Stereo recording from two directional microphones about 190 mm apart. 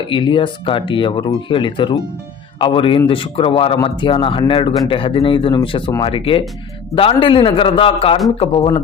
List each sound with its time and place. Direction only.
0.1 s speech: 25° left (ahead or behind)